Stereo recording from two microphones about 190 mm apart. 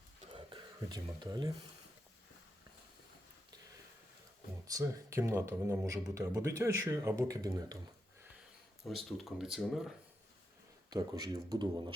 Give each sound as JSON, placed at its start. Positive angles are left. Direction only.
{"t": 0.3, "sound": "a sound", "side_deg": -25}
{"t": 4.6, "sound": "speech", "side_deg": -15}
{"t": 8.8, "sound": "speech", "side_deg": 0}
{"t": 10.8, "sound": "speech", "side_deg": -20}